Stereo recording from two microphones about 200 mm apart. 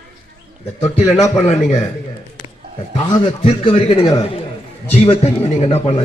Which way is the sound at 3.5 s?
25° left (ahead or behind).